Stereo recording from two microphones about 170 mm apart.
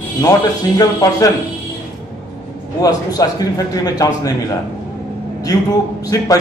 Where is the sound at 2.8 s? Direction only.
20° left (ahead or behind).